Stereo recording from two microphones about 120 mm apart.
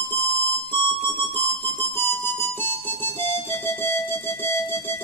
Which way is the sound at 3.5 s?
20° left (ahead or behind).